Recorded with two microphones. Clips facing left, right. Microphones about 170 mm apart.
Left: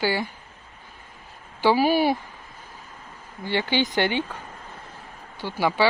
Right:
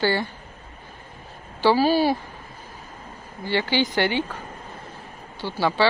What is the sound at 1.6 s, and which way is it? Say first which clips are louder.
Speech: right 1 dB; 15° left (ahead or behind).